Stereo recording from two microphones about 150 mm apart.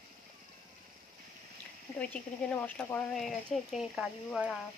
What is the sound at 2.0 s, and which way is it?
Speech, 10° left (ahead or behind).